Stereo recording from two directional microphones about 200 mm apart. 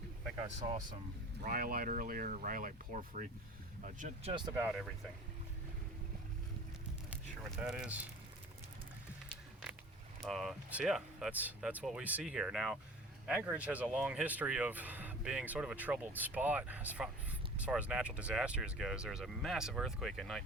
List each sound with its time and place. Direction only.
1.4 s speech: 45° right (ahead or behind); by 4.6 s 20° right (ahead or behind)
4.6 s speech: centre (ahead or behind)
7.5 s speech: 5° right (ahead or behind)
10.2 s speech: centre (ahead or behind)